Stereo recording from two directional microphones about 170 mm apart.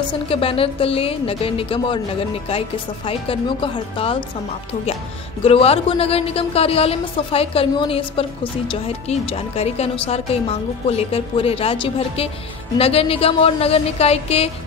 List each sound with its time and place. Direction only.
0.1 s a woman's voice: 35° left (ahead or behind)
3.1 s a woman's voice: 30° left (ahead or behind)
5.4 s a woman's voice: 35° left (ahead or behind)